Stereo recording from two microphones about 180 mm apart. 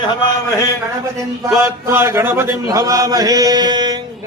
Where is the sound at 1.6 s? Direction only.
15° right (ahead or behind).